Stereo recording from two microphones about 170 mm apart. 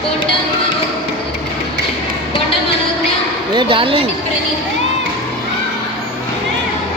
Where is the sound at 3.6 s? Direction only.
30° right (ahead or behind).